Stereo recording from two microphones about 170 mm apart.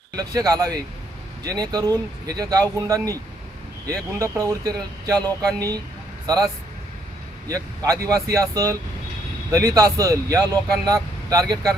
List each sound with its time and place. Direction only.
0.2 s speech: 20° right (ahead or behind)
4.2 s speech: 20° right (ahead or behind)